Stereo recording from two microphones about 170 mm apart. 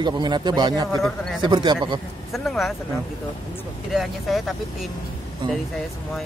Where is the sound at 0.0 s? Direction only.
25° right (ahead or behind).